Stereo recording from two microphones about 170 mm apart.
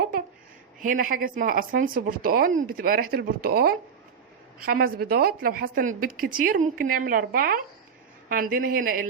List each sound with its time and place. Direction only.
0.8 s a woman's voice: 50° right (ahead or behind)